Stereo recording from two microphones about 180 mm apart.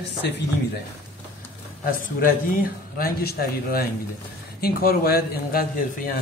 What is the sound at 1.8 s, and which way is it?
A man's voice, 50° left (ahead or behind).